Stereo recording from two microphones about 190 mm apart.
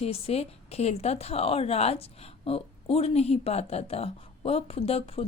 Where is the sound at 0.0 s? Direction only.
30° left (ahead or behind).